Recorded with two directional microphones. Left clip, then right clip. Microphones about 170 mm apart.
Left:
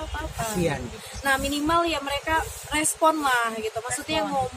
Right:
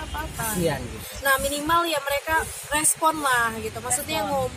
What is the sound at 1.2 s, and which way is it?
A woman's voice, 15° left (ahead or behind).